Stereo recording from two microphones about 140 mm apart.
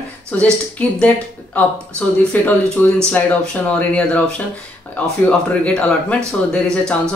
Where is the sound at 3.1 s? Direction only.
10° left (ahead or behind).